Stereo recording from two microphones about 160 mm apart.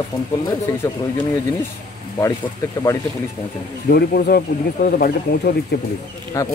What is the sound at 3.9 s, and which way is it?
Speech, 70° left (ahead or behind).